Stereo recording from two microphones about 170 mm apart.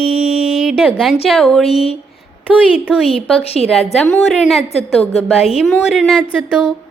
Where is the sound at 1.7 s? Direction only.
35° left (ahead or behind).